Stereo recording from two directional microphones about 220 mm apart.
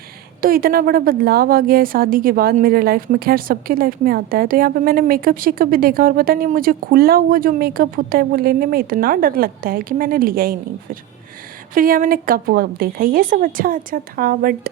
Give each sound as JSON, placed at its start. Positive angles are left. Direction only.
{"t": 0.4, "sound": "a woman's voice", "side_deg": -40}
{"t": 11.7, "sound": "a woman's voice", "side_deg": -40}